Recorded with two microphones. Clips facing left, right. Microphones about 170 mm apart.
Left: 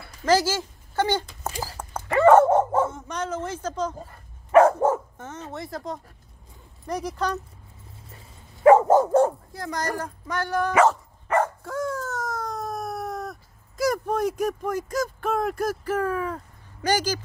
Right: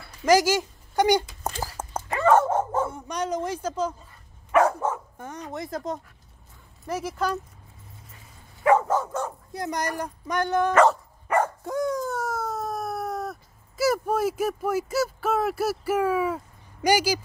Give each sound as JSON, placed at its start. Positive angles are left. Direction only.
{"t": 0.2, "sound": "speech", "side_deg": -15}
{"t": 2.0, "sound": "dog", "side_deg": 60}
{"t": 2.9, "sound": "speech", "side_deg": -15}
{"t": 4.5, "sound": "dog", "side_deg": 40}
{"t": 5.1, "sound": "speech", "side_deg": -15}
{"t": 6.9, "sound": "speech", "side_deg": -5}
{"t": 8.6, "sound": "dog", "side_deg": 30}
{"t": 8.9, "sound": "dog", "side_deg": 40}
{"t": 9.5, "sound": "speech", "side_deg": -15}
{"t": 10.7, "sound": "speech", "side_deg": 5}
{"t": 11.2, "sound": "dog", "side_deg": -15}